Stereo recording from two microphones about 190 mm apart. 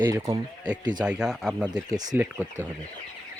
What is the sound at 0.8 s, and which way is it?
Speech, 20° right (ahead or behind).